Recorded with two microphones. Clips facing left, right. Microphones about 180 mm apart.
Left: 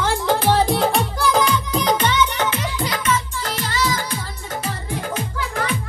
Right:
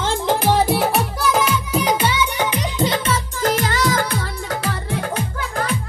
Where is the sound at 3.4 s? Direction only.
50° right (ahead or behind).